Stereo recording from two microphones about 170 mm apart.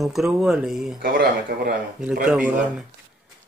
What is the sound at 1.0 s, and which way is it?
Speech, 60° right (ahead or behind).